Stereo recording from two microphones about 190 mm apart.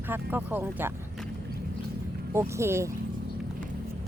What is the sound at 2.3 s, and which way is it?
Speech, 15° right (ahead or behind).